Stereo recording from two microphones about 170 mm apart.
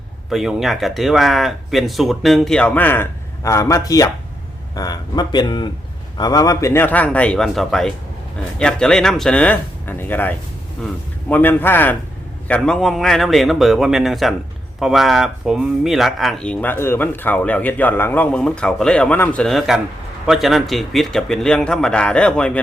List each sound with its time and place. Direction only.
0.3 s speech: centre (ahead or behind)